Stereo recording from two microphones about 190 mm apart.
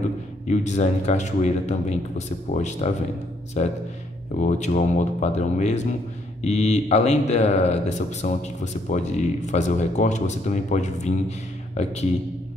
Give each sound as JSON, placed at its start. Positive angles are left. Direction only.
{"t": 0.5, "sound": "speech", "side_deg": 35}